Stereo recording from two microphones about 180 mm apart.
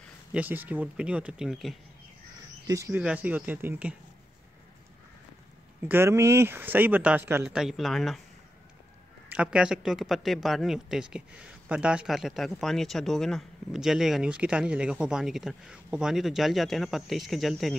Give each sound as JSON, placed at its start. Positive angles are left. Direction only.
{"t": 0.3, "sound": "speech", "side_deg": -10}
{"t": 2.6, "sound": "speech", "side_deg": -15}
{"t": 5.9, "sound": "speech", "side_deg": -15}
{"t": 9.3, "sound": "speech", "side_deg": -5}